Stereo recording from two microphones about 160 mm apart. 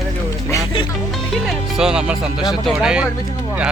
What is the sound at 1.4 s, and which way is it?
Speech, 5° right (ahead or behind).